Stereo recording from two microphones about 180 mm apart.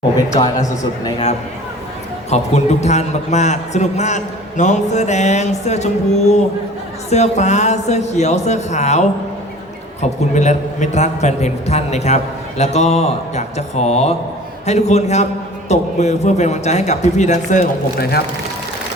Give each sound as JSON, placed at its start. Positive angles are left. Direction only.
{"t": 0.3, "sound": "a man's voice", "side_deg": 20}
{"t": 2.3, "sound": "a man's voice", "side_deg": 40}